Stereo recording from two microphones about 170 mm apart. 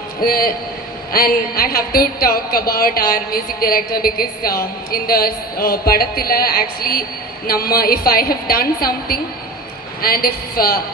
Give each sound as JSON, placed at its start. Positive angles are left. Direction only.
{"t": 0.2, "sound": "a woman's voice", "side_deg": 60}